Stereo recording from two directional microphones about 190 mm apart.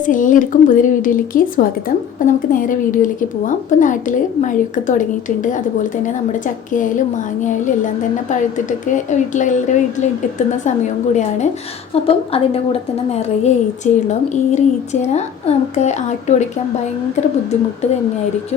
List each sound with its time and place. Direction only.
0.0 s a woman's voice: 45° left (ahead or behind)
8.3 s a woman's voice: 40° left (ahead or behind)